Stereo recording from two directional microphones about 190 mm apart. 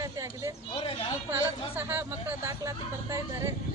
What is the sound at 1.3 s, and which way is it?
Speech, 10° right (ahead or behind).